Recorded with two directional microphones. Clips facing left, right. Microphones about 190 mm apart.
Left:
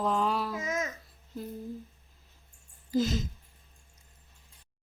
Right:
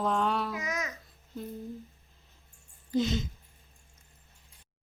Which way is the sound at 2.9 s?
Centre (ahead or behind).